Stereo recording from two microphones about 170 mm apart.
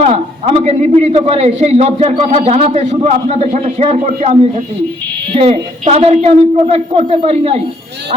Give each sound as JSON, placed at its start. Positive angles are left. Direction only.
{"t": 0.0, "sound": "a man's voice", "side_deg": -35}